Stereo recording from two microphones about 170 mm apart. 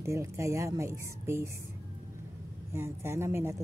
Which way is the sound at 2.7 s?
15° right (ahead or behind).